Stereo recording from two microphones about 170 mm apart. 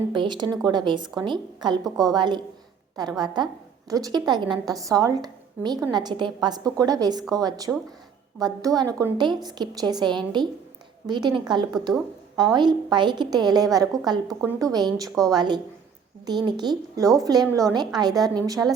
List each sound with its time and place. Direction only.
0.1 s a woman's voice: 25° right (ahead or behind)